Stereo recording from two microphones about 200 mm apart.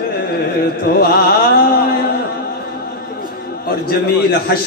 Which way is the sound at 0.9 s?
50° left (ahead or behind).